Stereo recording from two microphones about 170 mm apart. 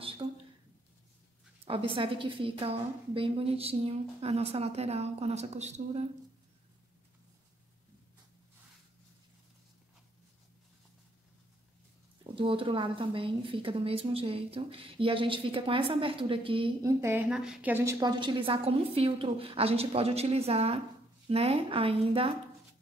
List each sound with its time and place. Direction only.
0.2 s a sound: 25° right (ahead or behind)
1.6 s a woman's voice: 35° right (ahead or behind)
12.4 s a woman's voice: 30° right (ahead or behind)
16.8 s a woman's voice: 15° right (ahead or behind)
18.2 s a woman's voice: 30° right (ahead or behind)